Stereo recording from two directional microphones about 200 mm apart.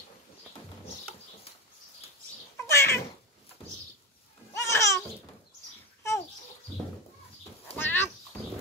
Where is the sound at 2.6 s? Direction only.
15° left (ahead or behind).